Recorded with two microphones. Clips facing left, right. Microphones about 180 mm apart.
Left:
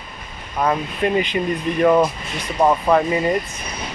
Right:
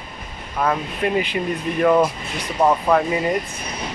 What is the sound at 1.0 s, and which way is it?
Speech, 5° right (ahead or behind).